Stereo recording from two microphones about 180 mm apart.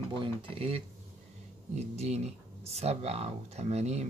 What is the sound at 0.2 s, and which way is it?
Speech, 30° right (ahead or behind).